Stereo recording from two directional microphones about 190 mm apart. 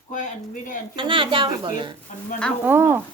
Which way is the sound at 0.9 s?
25° right (ahead or behind).